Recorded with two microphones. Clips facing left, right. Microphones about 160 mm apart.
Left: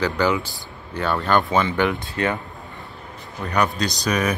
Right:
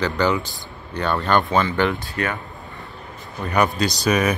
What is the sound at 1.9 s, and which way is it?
Speech, 25° left (ahead or behind).